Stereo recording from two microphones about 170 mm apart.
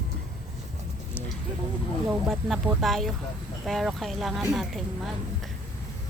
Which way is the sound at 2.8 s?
Centre (ahead or behind).